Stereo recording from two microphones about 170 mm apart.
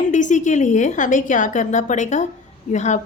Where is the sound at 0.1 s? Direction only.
45° left (ahead or behind).